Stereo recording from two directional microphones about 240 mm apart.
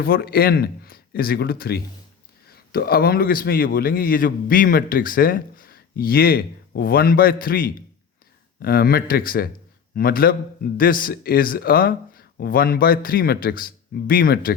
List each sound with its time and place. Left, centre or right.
0.0 s a man's voice: left